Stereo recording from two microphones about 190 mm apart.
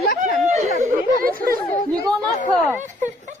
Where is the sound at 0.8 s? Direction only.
45° right (ahead or behind).